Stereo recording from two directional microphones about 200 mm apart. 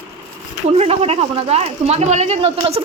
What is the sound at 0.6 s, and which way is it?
Speech, 30° right (ahead or behind).